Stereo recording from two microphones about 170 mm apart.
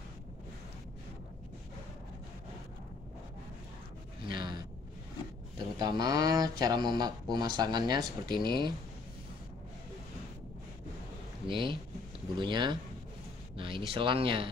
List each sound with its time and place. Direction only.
4.3 s a sound: 25° right (ahead or behind)
5.8 s speech: 25° right (ahead or behind)
11.4 s speech: 30° right (ahead or behind)